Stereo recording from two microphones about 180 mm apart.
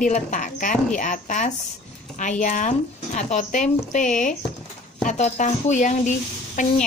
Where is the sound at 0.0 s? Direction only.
45° left (ahead or behind).